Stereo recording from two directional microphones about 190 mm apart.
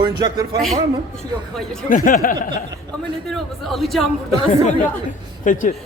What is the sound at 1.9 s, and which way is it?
Speech, 45° left (ahead or behind).